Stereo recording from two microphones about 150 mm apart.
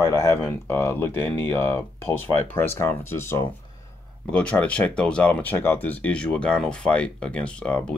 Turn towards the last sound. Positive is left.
turn(degrees=10)  # may be behind; listen again after turning